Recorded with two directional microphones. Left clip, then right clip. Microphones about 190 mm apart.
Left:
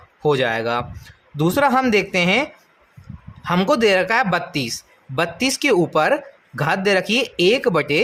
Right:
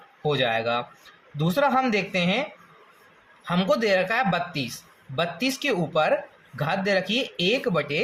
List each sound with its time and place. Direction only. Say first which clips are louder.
0.2 s speech: left 5 dB; 40° left (ahead or behind)